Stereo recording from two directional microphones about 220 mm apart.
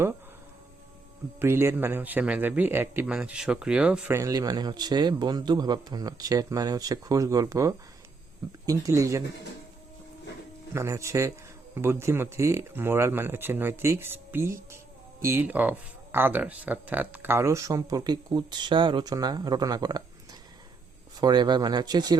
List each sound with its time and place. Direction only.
1.4 s speech: 10° right (ahead or behind)
10.8 s speech: 15° right (ahead or behind)
21.2 s speech: 20° right (ahead or behind)